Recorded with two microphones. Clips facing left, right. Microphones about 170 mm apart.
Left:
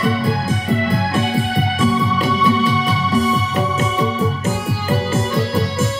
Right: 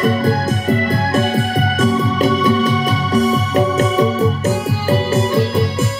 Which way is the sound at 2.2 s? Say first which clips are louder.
Right 4 dB; 45° right (ahead or behind).